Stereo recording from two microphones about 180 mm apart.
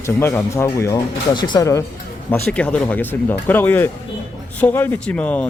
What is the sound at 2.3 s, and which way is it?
Speech, 5° left (ahead or behind).